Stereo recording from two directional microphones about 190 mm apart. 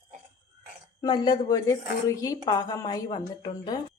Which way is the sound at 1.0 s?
25° left (ahead or behind).